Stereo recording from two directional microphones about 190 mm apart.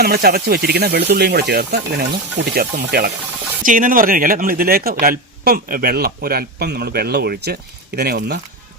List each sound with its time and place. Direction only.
0.0 s speech: 55° right (ahead or behind)